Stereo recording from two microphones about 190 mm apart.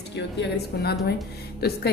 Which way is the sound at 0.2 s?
55° left (ahead or behind).